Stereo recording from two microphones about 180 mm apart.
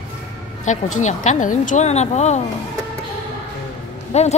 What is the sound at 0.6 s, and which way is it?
Speech, 40° left (ahead or behind).